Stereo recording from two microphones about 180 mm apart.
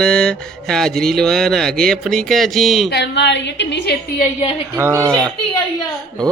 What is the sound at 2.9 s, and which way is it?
A woman's voice, 70° left (ahead or behind).